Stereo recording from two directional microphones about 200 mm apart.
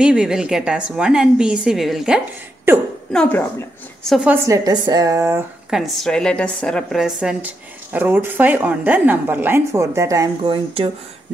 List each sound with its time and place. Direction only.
0.0 s a woman's voice: 5° right (ahead or behind)
3.1 s a woman's voice: 5° left (ahead or behind)
4.1 s a woman's voice: 5° right (ahead or behind)
4.5 s a woman's voice: 20° right (ahead or behind)
5.7 s a woman's voice: centre (ahead or behind); by 10.9 s 25° right (ahead or behind)